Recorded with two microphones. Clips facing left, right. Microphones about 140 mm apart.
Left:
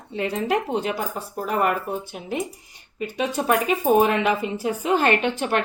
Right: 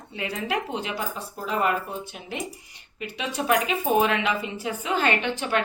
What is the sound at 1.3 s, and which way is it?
Speech, 55° left (ahead or behind).